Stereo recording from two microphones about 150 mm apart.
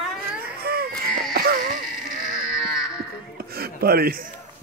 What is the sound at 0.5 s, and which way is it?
Baby cry, 90° right.